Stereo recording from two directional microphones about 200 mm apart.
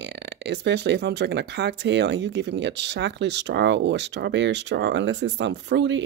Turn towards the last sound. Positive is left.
turn(degrees=-65)  # may be behind; listen again after turning